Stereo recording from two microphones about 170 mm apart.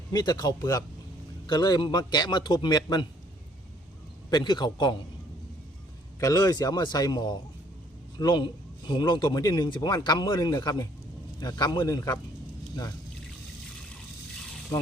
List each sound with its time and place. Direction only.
0.1 s speech: 25° left (ahead or behind)
4.3 s speech: 25° left (ahead or behind)
6.1 s speech: 20° left (ahead or behind)
14.7 s a sound: 15° left (ahead or behind)